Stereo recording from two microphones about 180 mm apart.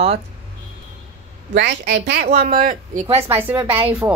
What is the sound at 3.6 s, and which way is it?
Speech, 30° right (ahead or behind).